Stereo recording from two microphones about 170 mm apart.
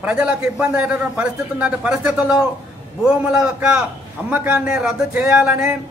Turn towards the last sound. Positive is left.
turn(degrees=-5)  # may be behind; listen again after turning